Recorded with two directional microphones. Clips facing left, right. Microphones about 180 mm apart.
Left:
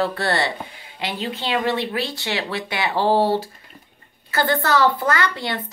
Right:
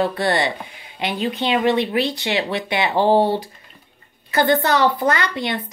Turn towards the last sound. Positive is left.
turn(degrees=-15)  # may be behind; listen again after turning